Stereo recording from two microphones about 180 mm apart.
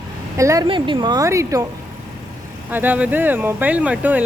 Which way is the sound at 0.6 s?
30° right (ahead or behind).